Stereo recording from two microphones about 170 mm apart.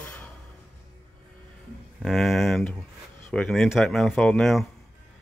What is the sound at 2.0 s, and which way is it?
Speech, centre (ahead or behind).